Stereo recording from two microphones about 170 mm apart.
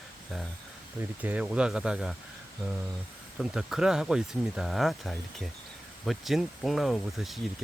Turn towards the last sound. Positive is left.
turn(degrees=0)  # may be behind; listen again after turning